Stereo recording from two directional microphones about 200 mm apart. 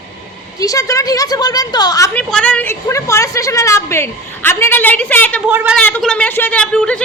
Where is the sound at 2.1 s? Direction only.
5° left (ahead or behind).